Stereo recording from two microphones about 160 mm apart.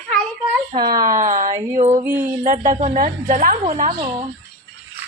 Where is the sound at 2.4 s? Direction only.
50° right (ahead or behind).